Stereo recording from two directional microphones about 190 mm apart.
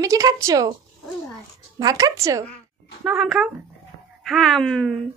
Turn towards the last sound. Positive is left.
turn(degrees=0)  # may be behind; listen again after turning